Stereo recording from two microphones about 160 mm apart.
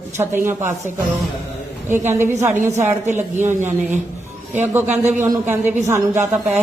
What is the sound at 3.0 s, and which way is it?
Speech, 50° right (ahead or behind).